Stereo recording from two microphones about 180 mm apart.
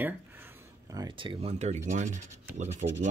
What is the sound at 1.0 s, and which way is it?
Speech, 25° right (ahead or behind).